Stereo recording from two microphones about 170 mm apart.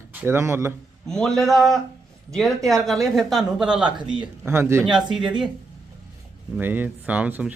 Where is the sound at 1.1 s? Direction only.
5° left (ahead or behind).